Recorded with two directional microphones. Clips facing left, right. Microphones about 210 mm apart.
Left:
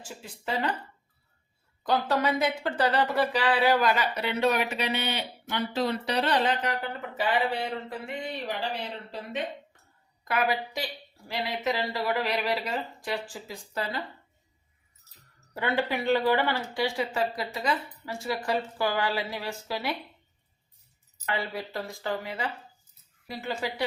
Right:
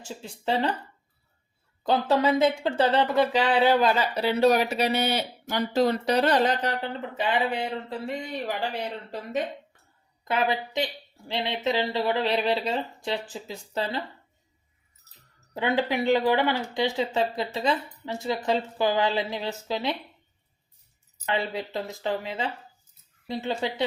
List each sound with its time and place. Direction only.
0.0 s speech: 25° right (ahead or behind)
1.8 s speech: 25° right (ahead or behind)
7.2 s speech: 20° right (ahead or behind)
10.2 s speech: 25° right (ahead or behind)
15.5 s speech: 15° right (ahead or behind)
21.3 s speech: 20° right (ahead or behind)